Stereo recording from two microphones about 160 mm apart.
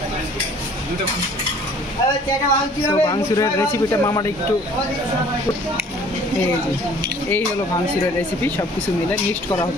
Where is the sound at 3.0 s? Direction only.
20° left (ahead or behind).